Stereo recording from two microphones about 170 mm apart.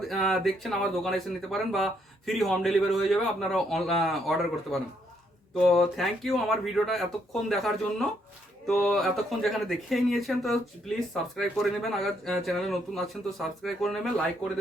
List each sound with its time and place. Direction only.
0.0 s speech: centre (ahead or behind)